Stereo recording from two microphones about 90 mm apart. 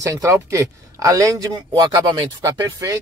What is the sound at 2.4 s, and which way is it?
Speech, 35° right (ahead or behind).